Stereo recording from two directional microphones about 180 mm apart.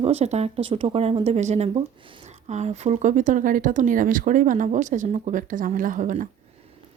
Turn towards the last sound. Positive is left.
turn(degrees=-45)  # may be behind; listen again after turning